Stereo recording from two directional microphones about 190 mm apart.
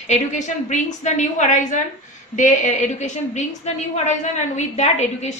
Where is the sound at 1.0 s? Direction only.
40° left (ahead or behind).